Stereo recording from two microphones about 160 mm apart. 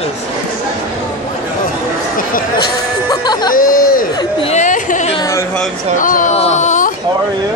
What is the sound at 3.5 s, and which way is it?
Speech, 60° left (ahead or behind).